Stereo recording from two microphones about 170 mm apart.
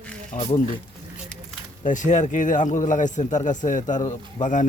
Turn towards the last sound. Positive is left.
turn(degrees=50)  # may be behind; listen again after turning